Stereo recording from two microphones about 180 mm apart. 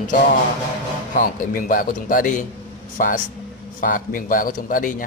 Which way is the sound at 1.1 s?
50° left (ahead or behind).